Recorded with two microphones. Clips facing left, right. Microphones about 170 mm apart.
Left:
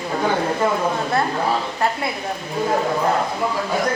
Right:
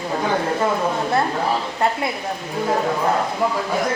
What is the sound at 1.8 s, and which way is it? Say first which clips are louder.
Speech: right 2 dB; 25° right (ahead or behind).